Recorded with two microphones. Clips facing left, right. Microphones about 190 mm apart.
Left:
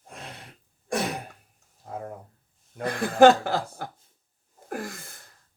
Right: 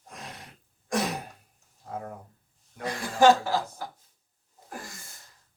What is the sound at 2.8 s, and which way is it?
Speech, 55° left (ahead or behind).